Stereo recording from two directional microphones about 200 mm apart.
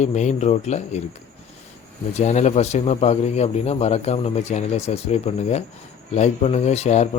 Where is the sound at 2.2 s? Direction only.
35° left (ahead or behind).